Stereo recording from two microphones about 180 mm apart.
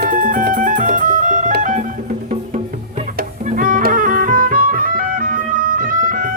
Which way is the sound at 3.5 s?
50° right (ahead or behind).